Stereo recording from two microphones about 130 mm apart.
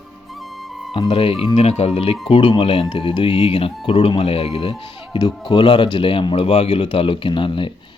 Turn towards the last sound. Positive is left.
turn(degrees=40)  # may be behind; listen again after turning